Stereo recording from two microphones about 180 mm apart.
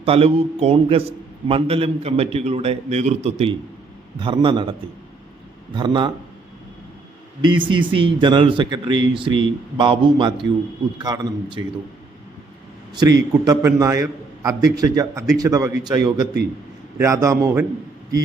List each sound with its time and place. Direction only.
0.0 s a man's voice: 30° right (ahead or behind)
5.7 s a man's voice: 25° right (ahead or behind)
7.4 s a man's voice: 25° right (ahead or behind)
12.9 s a man's voice: 20° right (ahead or behind)